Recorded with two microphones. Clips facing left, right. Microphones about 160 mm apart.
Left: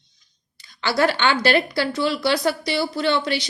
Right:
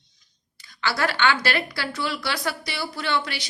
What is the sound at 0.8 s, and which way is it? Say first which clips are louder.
A woman's voice: left 4 dB; 25° left (ahead or behind).